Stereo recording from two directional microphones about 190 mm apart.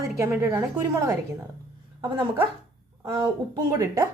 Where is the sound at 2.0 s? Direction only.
25° right (ahead or behind).